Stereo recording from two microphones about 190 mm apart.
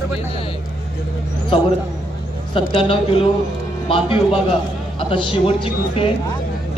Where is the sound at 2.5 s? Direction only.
25° left (ahead or behind).